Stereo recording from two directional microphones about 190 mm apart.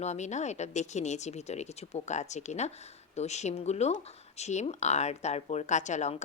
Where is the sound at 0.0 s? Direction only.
35° left (ahead or behind).